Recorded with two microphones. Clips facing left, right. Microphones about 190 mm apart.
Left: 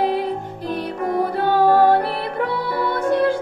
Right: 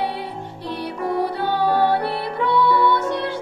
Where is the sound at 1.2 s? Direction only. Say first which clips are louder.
Left 4 dB; 45° left (ahead or behind).